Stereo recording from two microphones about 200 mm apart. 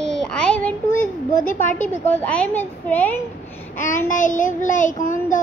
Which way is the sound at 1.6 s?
40° left (ahead or behind).